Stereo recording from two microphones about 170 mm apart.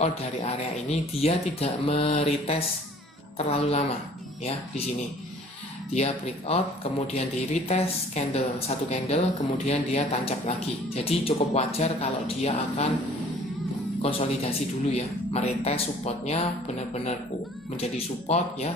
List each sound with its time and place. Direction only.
0.0 s speech: 40° left (ahead or behind)
5.9 s speech: 40° left (ahead or behind)
14.0 s speech: 35° left (ahead or behind)
17.7 s speech: 40° left (ahead or behind)